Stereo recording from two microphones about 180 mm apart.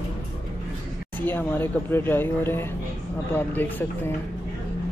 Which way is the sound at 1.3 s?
10° left (ahead or behind).